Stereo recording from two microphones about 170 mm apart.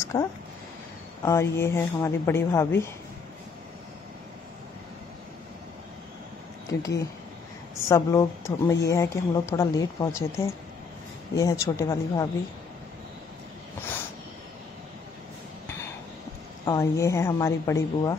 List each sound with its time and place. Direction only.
0.1 s a woman's voice: 20° left (ahead or behind)
6.7 s a woman's voice: 20° left (ahead or behind)
16.6 s a woman's voice: 20° left (ahead or behind)